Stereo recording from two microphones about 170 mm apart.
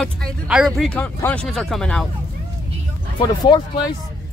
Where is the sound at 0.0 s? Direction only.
Centre (ahead or behind).